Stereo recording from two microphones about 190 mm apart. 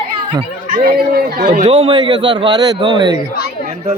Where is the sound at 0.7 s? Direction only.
50° right (ahead or behind).